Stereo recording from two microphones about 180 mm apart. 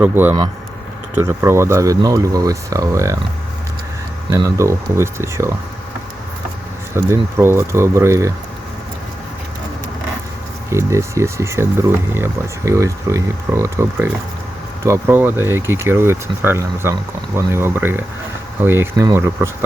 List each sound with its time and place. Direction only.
0.0 s speech: 10° right (ahead or behind)
4.3 s speech: 15° right (ahead or behind)
6.9 s speech: 15° right (ahead or behind)
10.7 s speech: 15° right (ahead or behind)